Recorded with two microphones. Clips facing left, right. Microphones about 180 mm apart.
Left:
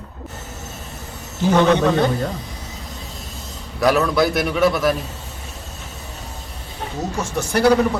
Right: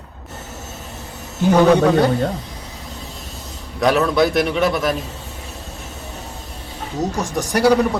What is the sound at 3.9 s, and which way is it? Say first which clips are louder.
Speech: right 1 dB; centre (ahead or behind).